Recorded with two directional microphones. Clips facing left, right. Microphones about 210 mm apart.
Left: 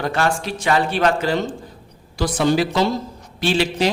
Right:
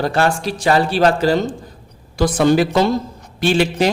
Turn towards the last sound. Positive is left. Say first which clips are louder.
# right 3 dB
turn(degrees=-50)  # may be behind; listen again after turning